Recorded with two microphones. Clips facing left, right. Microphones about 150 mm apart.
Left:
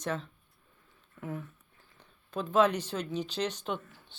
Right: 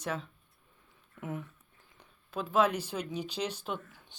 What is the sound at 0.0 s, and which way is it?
Speech, 10° right (ahead or behind).